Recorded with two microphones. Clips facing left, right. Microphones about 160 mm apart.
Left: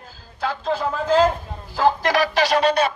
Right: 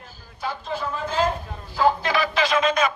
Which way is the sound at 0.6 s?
90° left.